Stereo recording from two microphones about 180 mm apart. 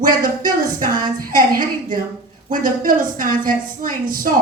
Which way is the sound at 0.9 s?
25° right (ahead or behind).